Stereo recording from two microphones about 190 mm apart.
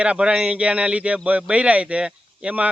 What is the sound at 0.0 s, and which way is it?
Speech, 5° right (ahead or behind).